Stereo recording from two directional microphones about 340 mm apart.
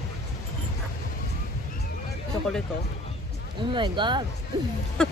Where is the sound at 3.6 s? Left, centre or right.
Centre.